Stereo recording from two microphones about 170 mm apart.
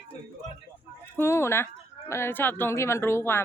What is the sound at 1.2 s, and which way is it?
Speech, 15° left (ahead or behind).